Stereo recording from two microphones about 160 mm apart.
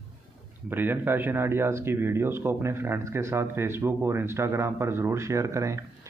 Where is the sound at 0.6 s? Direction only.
15° right (ahead or behind).